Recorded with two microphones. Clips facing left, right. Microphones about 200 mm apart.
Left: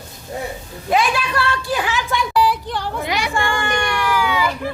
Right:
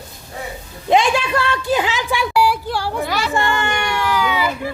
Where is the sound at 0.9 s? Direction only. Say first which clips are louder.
Right 3 dB; 25° right (ahead or behind); by 3.0 s 10° right (ahead or behind).